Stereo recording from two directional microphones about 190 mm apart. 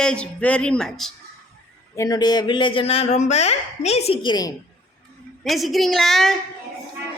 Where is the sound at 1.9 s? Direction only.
20° left (ahead or behind); by 4.3 s 35° left (ahead or behind).